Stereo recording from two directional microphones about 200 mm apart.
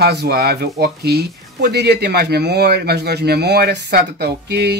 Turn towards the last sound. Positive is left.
turn(degrees=-55)  # may be behind; listen again after turning